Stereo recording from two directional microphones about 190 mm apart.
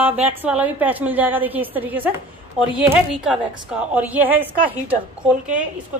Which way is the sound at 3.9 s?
10° right (ahead or behind).